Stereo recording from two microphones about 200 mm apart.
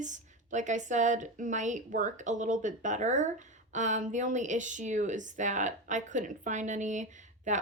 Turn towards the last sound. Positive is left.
turn(degrees=-40)  # may be behind; listen again after turning